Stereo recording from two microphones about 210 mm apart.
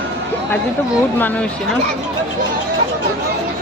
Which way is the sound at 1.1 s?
10° left (ahead or behind).